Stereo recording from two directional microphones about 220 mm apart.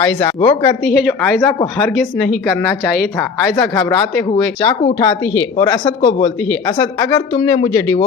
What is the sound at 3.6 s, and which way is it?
Speech, 15° left (ahead or behind).